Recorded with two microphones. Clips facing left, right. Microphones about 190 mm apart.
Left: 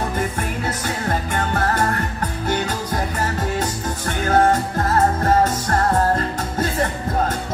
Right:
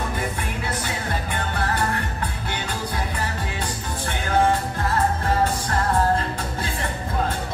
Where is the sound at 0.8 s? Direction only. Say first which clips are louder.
Left 5 dB; 45° left (ahead or behind).